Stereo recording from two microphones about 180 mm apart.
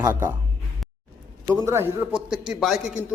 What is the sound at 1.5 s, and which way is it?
Speech, 15° right (ahead or behind).